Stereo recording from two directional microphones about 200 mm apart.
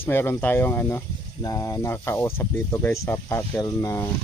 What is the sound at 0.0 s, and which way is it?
Speech, 10° left (ahead or behind).